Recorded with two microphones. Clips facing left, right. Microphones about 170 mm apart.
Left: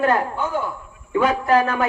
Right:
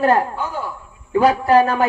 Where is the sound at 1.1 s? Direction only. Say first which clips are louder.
Right 4 dB; 35° right (ahead or behind).